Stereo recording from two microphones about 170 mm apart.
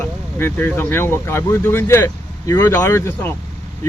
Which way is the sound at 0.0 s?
10° left (ahead or behind).